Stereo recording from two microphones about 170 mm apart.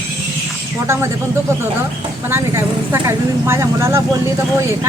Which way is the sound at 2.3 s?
15° right (ahead or behind).